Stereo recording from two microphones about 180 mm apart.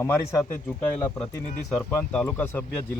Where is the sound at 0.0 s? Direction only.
15° left (ahead or behind).